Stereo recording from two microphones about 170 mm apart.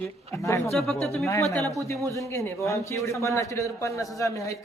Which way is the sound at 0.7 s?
Centre (ahead or behind).